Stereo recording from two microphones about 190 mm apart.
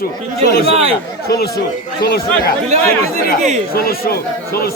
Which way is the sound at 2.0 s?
55° left (ahead or behind).